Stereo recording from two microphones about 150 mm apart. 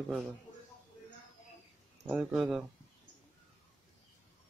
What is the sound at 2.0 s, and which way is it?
Speech, 5° right (ahead or behind).